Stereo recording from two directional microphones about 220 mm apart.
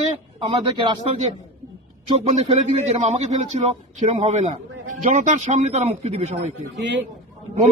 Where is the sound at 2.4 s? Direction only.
30° right (ahead or behind).